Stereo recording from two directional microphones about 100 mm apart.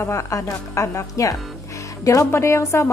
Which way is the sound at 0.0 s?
30° left (ahead or behind).